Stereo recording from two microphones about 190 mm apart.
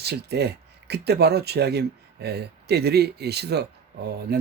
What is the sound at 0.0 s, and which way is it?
Speech, 60° right (ahead or behind).